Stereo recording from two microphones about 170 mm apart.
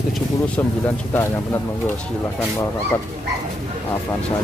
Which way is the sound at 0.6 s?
15° left (ahead or behind).